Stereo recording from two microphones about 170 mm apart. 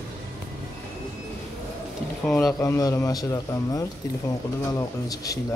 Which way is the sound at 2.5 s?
20° left (ahead or behind).